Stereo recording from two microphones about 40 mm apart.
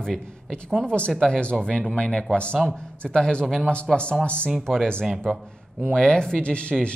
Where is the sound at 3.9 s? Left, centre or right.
Centre.